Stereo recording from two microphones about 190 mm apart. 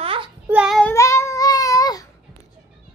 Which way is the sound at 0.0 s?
25° right (ahead or behind).